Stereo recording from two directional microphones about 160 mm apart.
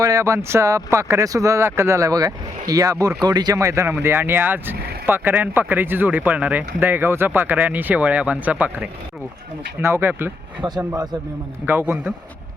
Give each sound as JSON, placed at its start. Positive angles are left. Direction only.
{"t": 0.0, "sound": "speech", "side_deg": -20}
{"t": 10.6, "sound": "speech", "side_deg": -25}
{"t": 11.6, "sound": "speech", "side_deg": -15}